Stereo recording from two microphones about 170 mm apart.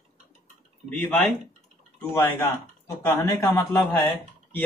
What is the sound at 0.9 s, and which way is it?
Speech, 5° left (ahead or behind).